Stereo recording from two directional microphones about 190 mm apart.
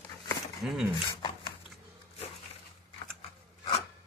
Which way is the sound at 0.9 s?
25° left (ahead or behind).